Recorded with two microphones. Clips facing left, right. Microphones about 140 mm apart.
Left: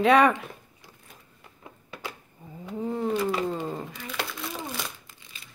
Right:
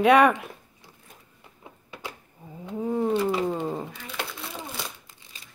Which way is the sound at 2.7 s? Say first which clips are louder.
Right 3 dB; 10° right (ahead or behind).